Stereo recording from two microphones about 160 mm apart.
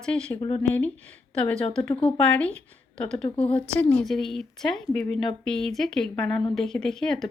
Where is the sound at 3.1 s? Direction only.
35° left (ahead or behind).